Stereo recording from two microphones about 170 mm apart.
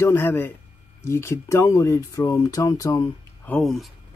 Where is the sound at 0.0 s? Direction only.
15° left (ahead or behind).